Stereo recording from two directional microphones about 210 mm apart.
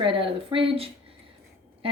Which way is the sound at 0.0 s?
25° right (ahead or behind).